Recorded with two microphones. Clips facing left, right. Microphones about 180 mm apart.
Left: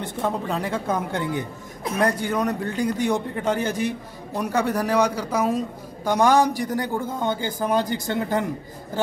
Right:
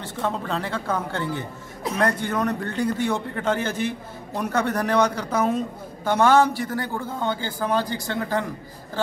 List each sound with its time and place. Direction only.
0.0 s a man's voice: 15° left (ahead or behind)